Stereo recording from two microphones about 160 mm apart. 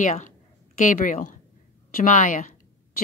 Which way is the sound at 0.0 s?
50° left (ahead or behind).